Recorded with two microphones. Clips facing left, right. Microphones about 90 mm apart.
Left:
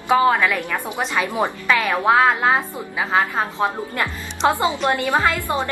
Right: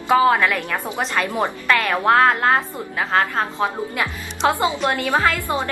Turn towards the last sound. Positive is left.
turn(degrees=15)  # may be behind; listen again after turning